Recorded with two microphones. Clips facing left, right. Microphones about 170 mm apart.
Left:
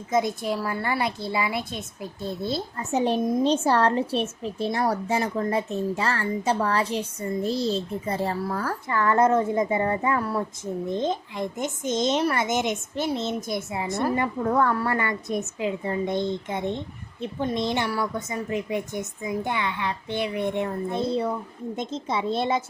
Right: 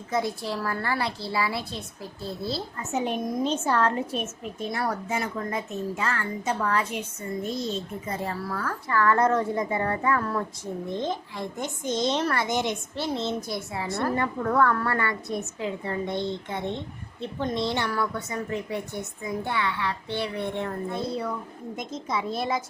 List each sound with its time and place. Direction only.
0.1 s a child's voice: 20° left (ahead or behind)
2.7 s a woman's voice: 35° left (ahead or behind)